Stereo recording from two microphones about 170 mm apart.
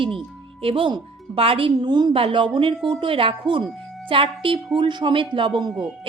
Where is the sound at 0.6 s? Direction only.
35° right (ahead or behind).